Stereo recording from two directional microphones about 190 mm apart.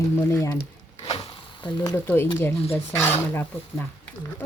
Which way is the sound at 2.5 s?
30° left (ahead or behind).